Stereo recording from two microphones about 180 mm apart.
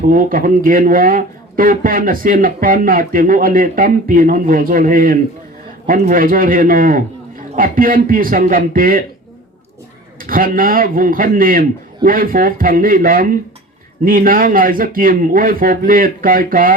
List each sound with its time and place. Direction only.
0.1 s speech: 50° right (ahead or behind)
10.2 s speech: 50° right (ahead or behind)